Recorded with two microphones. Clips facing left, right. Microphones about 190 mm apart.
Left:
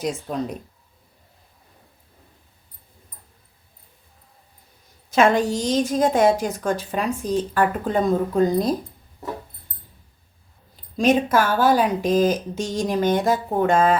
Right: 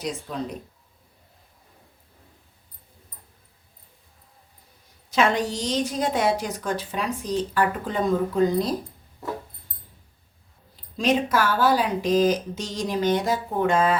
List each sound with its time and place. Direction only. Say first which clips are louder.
0.0 s a woman's voice: left 5 dB; 45° left (ahead or behind)
5.1 s a woman's voice: left 5 dB; 50° left (ahead or behind)
10.9 s a woman's voice: left 4 dB; 50° left (ahead or behind)